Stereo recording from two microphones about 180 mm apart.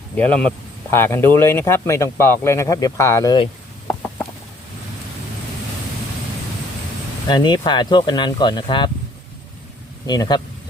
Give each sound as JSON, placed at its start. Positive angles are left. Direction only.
{"t": 0.2, "sound": "speech", "side_deg": 5}
{"t": 7.3, "sound": "speech", "side_deg": 25}
{"t": 10.1, "sound": "speech", "side_deg": 25}